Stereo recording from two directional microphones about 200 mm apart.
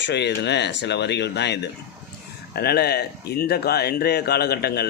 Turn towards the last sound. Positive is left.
turn(degrees=55)  # may be behind; listen again after turning